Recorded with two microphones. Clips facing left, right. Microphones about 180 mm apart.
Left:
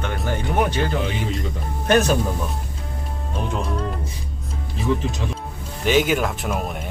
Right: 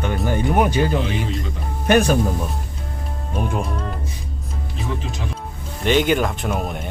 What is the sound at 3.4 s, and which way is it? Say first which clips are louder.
Speech: right 3 dB; 10° right (ahead or behind).